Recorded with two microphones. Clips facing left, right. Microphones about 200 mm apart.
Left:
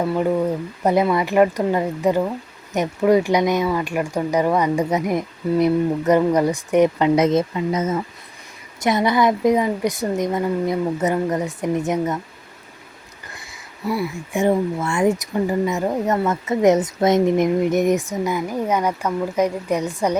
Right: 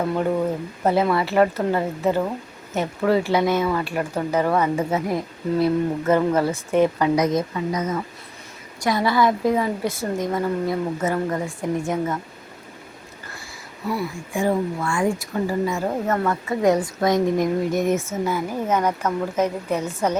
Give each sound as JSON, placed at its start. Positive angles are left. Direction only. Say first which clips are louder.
{"t": 1.1, "sound": "speech", "louder": "left 2 dB", "side_deg": 15}
{"t": 13.3, "sound": "a sound", "louder": "right 2 dB", "side_deg": 15}
{"t": 14.3, "sound": "speech", "louder": "left 3 dB", "side_deg": 20}